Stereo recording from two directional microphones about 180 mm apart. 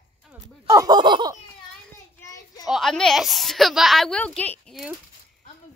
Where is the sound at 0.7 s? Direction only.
20° right (ahead or behind).